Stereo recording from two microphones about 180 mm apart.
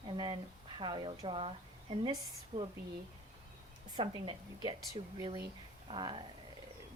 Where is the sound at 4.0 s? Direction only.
30° right (ahead or behind).